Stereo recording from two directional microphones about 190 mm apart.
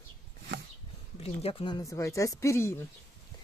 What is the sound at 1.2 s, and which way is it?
Speech, 30° left (ahead or behind).